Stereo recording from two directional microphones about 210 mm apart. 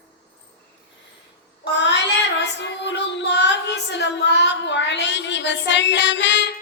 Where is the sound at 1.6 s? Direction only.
55° left (ahead or behind).